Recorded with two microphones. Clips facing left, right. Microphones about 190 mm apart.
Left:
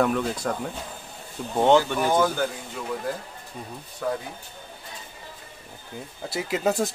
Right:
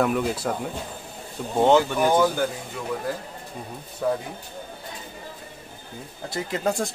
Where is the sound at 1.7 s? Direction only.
Centre (ahead or behind).